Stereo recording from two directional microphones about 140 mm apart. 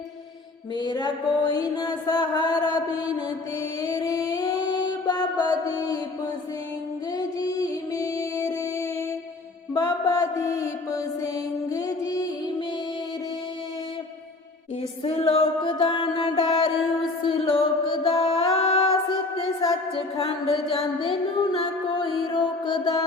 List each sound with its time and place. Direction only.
0.8 s music: 30° left (ahead or behind)
5.6 s mantra: 25° left (ahead or behind)
7.1 s music: 25° left (ahead or behind)
9.7 s mantra: 25° left (ahead or behind)
15.0 s music: 45° left (ahead or behind)
19.9 s music: 40° left (ahead or behind)
22.7 s music: 30° left (ahead or behind)